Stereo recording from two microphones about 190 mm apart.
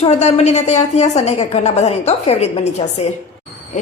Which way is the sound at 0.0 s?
35° left (ahead or behind).